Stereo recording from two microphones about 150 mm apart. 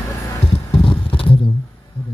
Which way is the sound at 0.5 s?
35° left (ahead or behind).